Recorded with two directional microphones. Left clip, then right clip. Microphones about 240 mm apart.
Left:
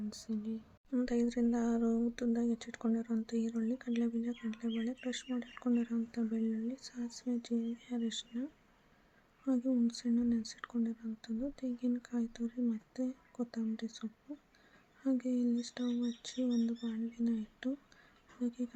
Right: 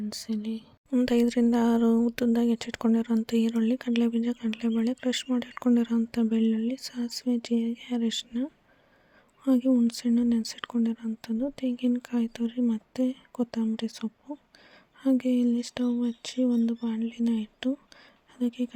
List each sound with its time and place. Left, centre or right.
0.1 s speech: right